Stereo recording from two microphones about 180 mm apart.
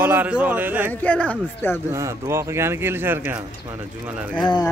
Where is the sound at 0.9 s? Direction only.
10° left (ahead or behind).